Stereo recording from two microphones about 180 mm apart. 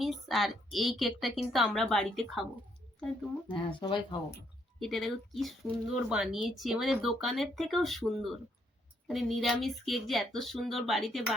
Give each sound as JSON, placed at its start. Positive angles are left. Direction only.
{"t": 0.0, "sound": "speech", "side_deg": 0}
{"t": 3.5, "sound": "speech", "side_deg": 25}
{"t": 4.8, "sound": "speech", "side_deg": 0}